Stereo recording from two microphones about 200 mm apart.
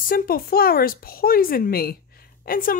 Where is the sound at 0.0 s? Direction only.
45° left (ahead or behind).